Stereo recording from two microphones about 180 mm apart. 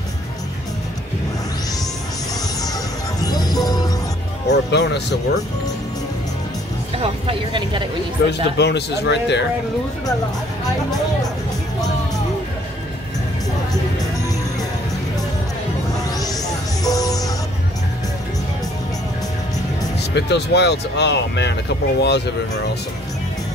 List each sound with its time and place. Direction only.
3.2 s music: 20° left (ahead or behind)
4.5 s speech: 70° left (ahead or behind)
7.0 s speech: 30° right (ahead or behind)
8.2 s speech: 75° left (ahead or behind)
16.2 s music: 20° left (ahead or behind)
20.0 s speech: 70° left (ahead or behind)